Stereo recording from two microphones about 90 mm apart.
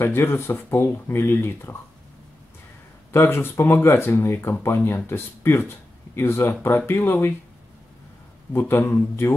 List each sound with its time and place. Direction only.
0.0 s speech: 25° left (ahead or behind)
3.1 s speech: 30° left (ahead or behind)
8.5 s speech: 25° left (ahead or behind)